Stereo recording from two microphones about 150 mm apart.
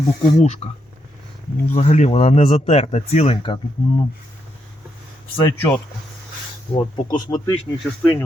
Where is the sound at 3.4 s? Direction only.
30° left (ahead or behind).